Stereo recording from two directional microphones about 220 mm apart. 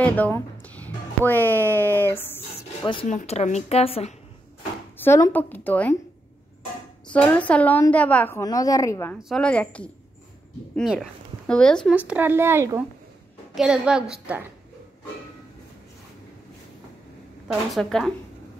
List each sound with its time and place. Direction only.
0.0 s music: 5° left (ahead or behind)
2.9 s a woman's voice: 25° left (ahead or behind)
4.9 s a woman's voice: 10° left (ahead or behind)
7.1 s a woman's voice: 5° left (ahead or behind)
11.9 s a woman's voice: 5° right (ahead or behind)
17.5 s a woman's voice: centre (ahead or behind)